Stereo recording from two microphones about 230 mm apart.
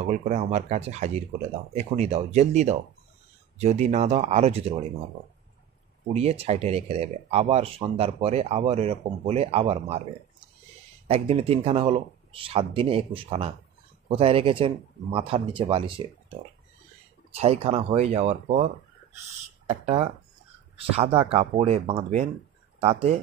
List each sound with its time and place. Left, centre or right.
0.0 s speech: right
6.1 s speech: right
11.1 s speech: right
17.3 s speech: right
19.7 s speech: right